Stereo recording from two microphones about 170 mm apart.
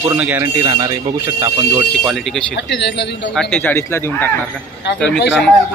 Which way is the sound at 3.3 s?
5° left (ahead or behind).